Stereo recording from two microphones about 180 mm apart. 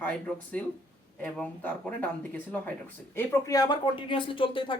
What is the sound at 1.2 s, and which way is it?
Speech, 5° left (ahead or behind).